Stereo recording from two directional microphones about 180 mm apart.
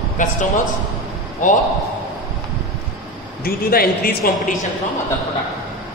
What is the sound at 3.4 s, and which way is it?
A man's voice, 55° left (ahead or behind).